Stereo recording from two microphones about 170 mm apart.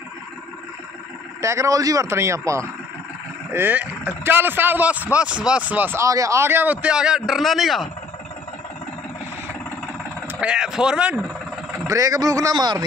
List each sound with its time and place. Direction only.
1.4 s speech: 20° right (ahead or behind); by 7.9 s centre (ahead or behind)
10.2 s speech: 5° right (ahead or behind)
11.9 s a man's voice: 20° right (ahead or behind)